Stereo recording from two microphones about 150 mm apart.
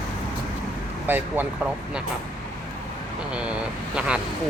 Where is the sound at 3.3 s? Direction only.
10° right (ahead or behind).